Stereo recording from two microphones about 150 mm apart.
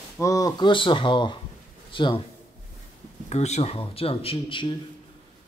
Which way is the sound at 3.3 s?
45° left (ahead or behind).